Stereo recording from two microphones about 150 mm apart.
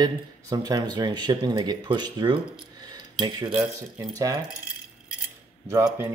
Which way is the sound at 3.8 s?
25° right (ahead or behind).